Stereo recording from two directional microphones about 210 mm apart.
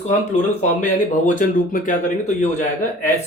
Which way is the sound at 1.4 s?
40° left (ahead or behind).